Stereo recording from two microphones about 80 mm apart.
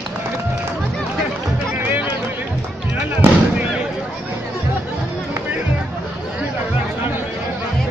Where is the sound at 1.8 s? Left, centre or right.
Right.